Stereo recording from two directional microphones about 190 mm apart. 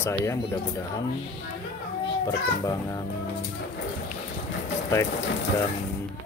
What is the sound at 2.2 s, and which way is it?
Speech, 15° left (ahead or behind).